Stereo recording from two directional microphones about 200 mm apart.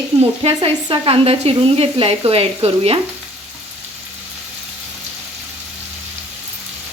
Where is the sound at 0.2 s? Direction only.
30° right (ahead or behind).